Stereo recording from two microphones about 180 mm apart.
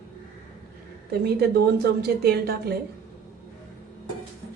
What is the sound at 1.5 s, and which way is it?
Speech, 60° right (ahead or behind).